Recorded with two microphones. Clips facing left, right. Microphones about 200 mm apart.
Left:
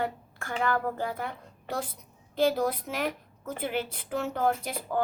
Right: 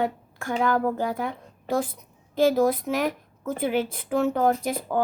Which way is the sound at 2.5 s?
45° right (ahead or behind).